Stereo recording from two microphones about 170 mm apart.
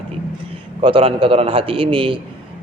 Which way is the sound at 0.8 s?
35° right (ahead or behind).